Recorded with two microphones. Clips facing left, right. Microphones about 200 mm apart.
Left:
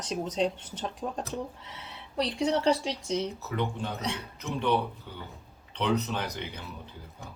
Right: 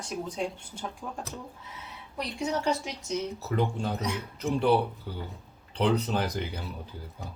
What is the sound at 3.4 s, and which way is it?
Speech, 35° right (ahead or behind).